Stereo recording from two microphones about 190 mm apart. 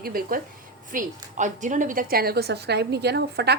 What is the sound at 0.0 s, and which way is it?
Speech, 50° right (ahead or behind).